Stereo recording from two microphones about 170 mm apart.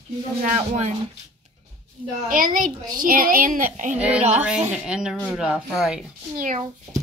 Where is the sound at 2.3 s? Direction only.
55° right (ahead or behind).